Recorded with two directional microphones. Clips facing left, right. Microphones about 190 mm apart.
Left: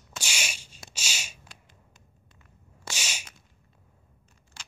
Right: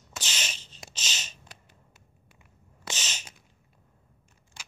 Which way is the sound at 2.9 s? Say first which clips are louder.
Even; 10° left (ahead or behind).